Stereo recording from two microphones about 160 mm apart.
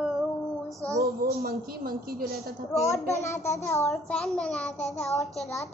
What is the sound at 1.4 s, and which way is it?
Speech, 65° right (ahead or behind).